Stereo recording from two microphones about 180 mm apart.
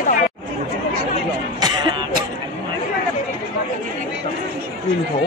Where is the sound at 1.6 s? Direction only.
25° right (ahead or behind).